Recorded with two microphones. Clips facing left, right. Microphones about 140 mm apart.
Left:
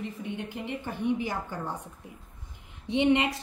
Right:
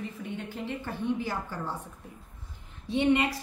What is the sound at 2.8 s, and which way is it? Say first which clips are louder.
Speech: left 1 dB; 20° left (ahead or behind).